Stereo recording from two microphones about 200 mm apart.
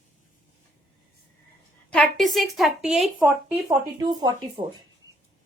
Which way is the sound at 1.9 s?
5° left (ahead or behind).